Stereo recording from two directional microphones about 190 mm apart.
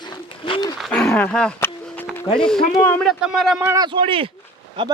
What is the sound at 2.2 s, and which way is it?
Speech, 25° left (ahead or behind).